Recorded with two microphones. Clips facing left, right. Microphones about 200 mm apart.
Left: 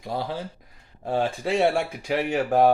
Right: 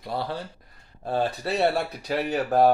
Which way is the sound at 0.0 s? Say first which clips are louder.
Left 1 dB; 15° left (ahead or behind).